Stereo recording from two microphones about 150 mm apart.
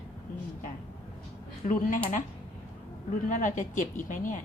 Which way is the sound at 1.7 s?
60° left (ahead or behind).